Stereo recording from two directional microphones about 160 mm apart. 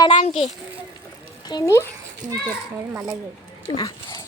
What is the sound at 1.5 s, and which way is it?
Speech, 20° left (ahead or behind).